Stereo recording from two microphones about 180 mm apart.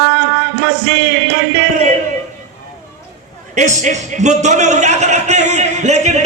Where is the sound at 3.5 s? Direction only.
40° right (ahead or behind).